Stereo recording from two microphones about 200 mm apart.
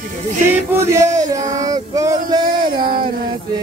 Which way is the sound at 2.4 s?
45° right (ahead or behind).